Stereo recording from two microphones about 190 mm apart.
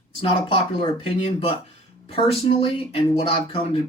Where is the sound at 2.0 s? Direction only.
30° left (ahead or behind).